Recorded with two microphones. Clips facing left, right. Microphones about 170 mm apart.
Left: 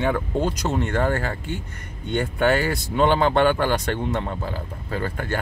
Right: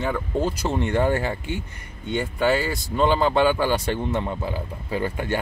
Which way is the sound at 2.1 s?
5° right (ahead or behind).